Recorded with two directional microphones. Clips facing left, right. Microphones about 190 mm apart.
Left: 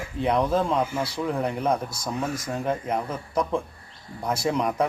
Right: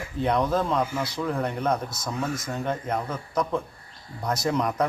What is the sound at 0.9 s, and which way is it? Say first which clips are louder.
Speech: left 1 dB; 30° left (ahead or behind).